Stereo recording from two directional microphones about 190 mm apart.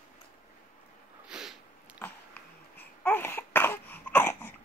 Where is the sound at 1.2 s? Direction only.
5° right (ahead or behind).